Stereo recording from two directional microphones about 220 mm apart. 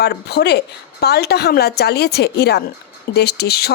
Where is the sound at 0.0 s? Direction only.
45° left (ahead or behind).